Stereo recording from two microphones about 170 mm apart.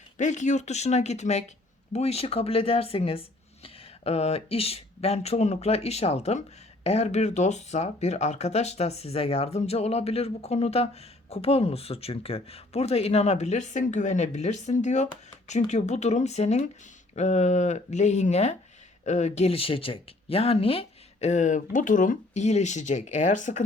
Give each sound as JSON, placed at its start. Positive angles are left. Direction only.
{"t": 0.2, "sound": "speech", "side_deg": 45}